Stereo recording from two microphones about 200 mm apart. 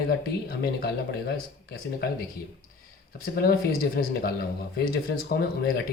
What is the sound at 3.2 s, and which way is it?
Speech, 50° left (ahead or behind).